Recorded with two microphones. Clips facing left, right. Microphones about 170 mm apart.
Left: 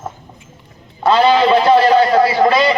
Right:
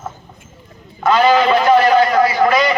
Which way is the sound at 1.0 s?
30° left (ahead or behind).